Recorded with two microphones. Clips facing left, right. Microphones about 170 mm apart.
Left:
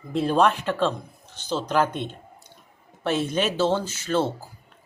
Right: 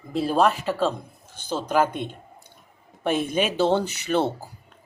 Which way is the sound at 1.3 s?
10° right (ahead or behind).